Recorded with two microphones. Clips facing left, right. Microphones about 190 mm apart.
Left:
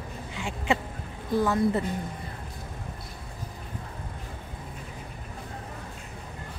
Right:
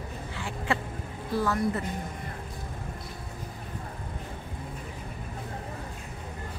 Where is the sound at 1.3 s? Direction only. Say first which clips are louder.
Left 3 dB; 20° left (ahead or behind).